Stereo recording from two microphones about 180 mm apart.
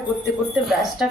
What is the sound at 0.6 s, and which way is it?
Speech, centre (ahead or behind).